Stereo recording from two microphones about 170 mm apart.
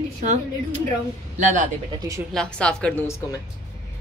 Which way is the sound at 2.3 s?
5° left (ahead or behind).